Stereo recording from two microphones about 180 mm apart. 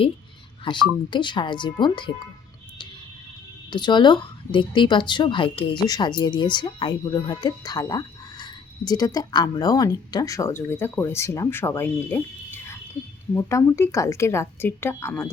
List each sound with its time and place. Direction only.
0.6 s speech: 25° left (ahead or behind)
3.7 s speech: 25° left (ahead or behind)
13.3 s speech: 15° left (ahead or behind)